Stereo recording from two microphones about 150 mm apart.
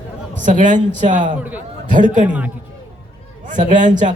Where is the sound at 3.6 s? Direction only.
55° right (ahead or behind).